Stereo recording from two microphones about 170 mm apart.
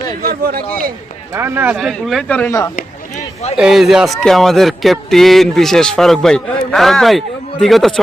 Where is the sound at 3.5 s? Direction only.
5° right (ahead or behind).